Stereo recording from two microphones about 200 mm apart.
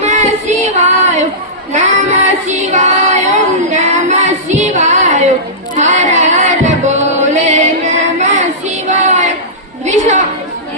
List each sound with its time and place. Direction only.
0.0 s child singing: 35° right (ahead or behind)
5.7 s music: 35° right (ahead or behind)
8.9 s child singing: 35° right (ahead or behind)
9.8 s a sound: 35° right (ahead or behind)